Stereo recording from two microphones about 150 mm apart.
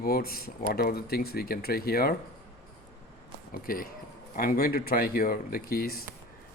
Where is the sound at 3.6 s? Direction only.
70° left (ahead or behind).